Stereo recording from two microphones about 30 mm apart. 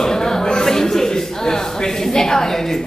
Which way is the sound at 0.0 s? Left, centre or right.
Centre.